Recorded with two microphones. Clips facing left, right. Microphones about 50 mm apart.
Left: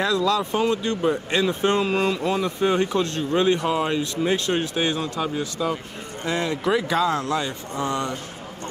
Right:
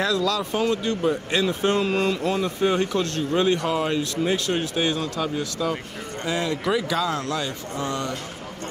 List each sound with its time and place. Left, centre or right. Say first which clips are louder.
0.0 s speech: left 2 dB; left
2.6 s speech: left 1 dB; centre
6.9 s speech: left 3 dB; left